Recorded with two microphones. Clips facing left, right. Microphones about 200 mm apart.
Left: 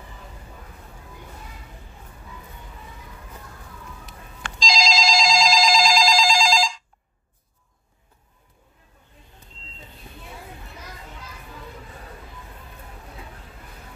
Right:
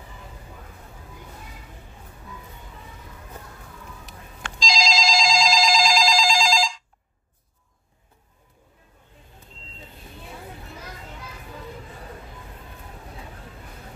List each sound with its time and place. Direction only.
4.6 s telephone bell ringing: 60° left (ahead or behind)